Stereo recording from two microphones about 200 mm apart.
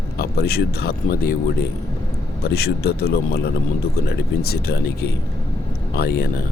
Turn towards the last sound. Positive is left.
turn(degrees=50)  # may be behind; listen again after turning